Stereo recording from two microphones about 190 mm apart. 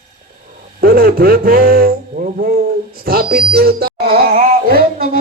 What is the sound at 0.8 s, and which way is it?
Speech, 50° right (ahead or behind).